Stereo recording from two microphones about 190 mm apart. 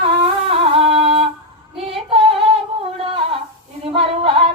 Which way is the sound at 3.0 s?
30° right (ahead or behind).